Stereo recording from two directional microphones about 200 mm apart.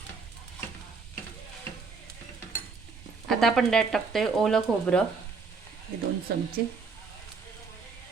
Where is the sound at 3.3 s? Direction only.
Centre (ahead or behind).